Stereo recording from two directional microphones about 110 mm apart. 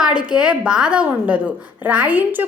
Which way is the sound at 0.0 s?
10° right (ahead or behind).